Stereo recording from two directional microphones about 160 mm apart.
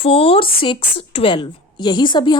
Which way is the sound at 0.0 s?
35° left (ahead or behind).